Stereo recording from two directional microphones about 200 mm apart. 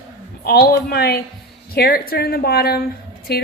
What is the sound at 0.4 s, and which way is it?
A woman's voice, 50° left (ahead or behind).